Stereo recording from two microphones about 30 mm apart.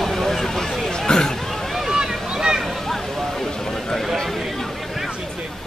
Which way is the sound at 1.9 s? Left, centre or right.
Centre.